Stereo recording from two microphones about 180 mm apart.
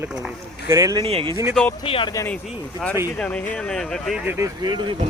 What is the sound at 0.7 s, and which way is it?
Speech, 20° right (ahead or behind).